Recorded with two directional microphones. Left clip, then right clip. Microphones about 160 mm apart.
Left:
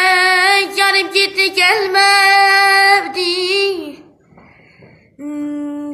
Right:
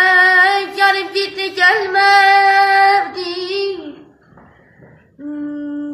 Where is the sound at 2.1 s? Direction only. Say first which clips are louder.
Right 1 dB; 15° left (ahead or behind).